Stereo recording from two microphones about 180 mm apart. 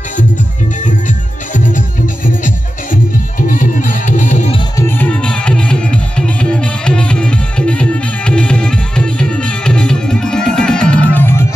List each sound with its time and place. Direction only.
0.8 s music: 45° left (ahead or behind)
4.7 s music: 10° left (ahead or behind)